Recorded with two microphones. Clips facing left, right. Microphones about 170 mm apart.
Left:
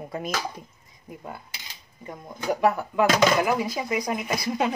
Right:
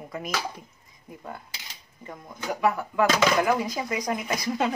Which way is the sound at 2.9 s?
10° left (ahead or behind).